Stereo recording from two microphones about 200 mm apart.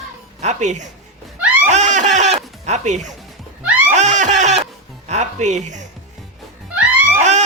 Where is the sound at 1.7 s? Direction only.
35° right (ahead or behind).